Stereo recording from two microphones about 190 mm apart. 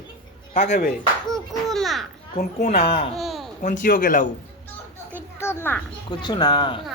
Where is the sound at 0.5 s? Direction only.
40° left (ahead or behind).